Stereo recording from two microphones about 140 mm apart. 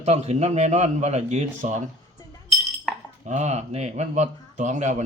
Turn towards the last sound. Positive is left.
turn(degrees=-60)  # may be behind; listen again after turning